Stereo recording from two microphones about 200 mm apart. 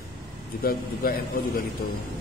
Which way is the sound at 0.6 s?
50° left (ahead or behind).